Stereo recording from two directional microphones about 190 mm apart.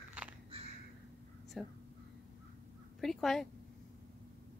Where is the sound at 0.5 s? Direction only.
30° right (ahead or behind).